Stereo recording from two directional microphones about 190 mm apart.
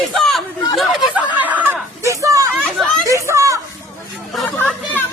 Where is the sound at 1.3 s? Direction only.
10° right (ahead or behind).